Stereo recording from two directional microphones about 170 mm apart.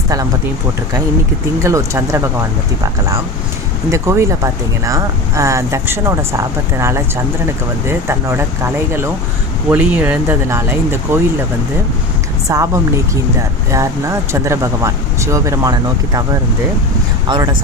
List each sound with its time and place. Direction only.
1.6 s speech: 15° right (ahead or behind)
3.9 s speech: 15° right (ahead or behind)
12.5 s speech: 20° right (ahead or behind)
17.2 s speech: 25° right (ahead or behind)